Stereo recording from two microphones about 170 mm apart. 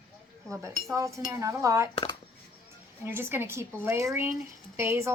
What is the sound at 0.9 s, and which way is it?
Cutlery, 20° right (ahead or behind).